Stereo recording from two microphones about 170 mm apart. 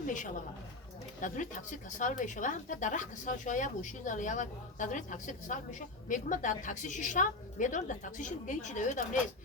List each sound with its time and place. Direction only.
0.0 s speech: 50° left (ahead or behind)